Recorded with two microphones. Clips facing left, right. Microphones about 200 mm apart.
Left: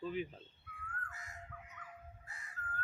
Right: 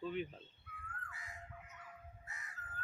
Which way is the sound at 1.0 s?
45° left (ahead or behind).